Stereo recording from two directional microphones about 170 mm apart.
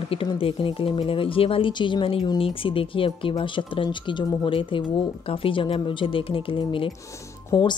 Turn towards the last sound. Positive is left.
turn(degrees=25)  # may be behind; listen again after turning